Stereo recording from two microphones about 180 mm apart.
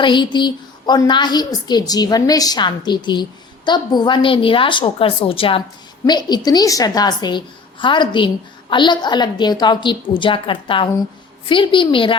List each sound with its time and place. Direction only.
0.0 s a woman's voice: 25° left (ahead or behind)